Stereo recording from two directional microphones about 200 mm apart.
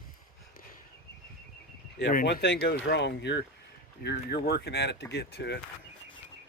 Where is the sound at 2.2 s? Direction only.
60° left (ahead or behind).